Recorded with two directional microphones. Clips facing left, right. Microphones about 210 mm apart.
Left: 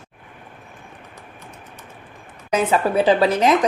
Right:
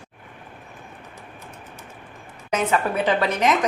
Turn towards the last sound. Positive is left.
turn(degrees=35)  # may be behind; listen again after turning